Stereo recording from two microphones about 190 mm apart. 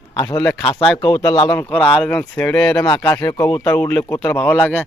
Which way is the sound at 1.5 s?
10° left (ahead or behind).